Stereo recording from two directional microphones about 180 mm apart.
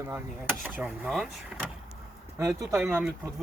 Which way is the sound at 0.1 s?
10° right (ahead or behind).